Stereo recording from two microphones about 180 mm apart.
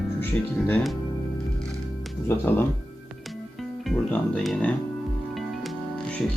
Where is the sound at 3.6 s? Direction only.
Centre (ahead or behind).